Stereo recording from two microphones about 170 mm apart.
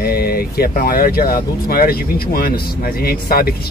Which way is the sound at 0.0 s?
65° left (ahead or behind).